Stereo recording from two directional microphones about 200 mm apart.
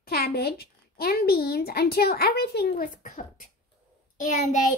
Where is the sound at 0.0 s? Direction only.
50° left (ahead or behind).